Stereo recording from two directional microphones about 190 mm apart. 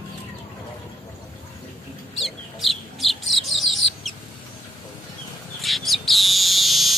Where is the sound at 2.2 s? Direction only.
Centre (ahead or behind).